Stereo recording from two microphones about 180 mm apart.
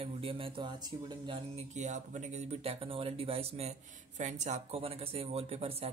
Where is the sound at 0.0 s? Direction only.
30° right (ahead or behind).